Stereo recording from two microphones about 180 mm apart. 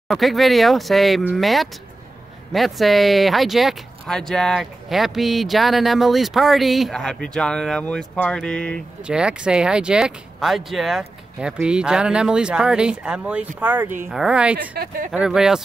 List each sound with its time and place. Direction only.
0.1 s speech: centre (ahead or behind)
9.0 s speech: 5° right (ahead or behind)
14.6 s speech: 50° right (ahead or behind)
15.0 s speech: 5° right (ahead or behind)